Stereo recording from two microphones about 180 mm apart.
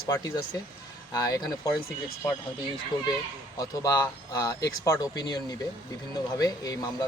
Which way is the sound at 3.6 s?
20° left (ahead or behind).